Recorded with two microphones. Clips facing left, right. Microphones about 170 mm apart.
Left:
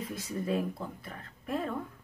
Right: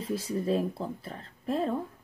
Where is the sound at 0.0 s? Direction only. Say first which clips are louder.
Right 5 dB; 30° right (ahead or behind).